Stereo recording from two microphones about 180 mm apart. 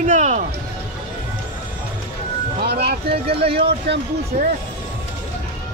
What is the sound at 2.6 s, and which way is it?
Speech, 60° right (ahead or behind).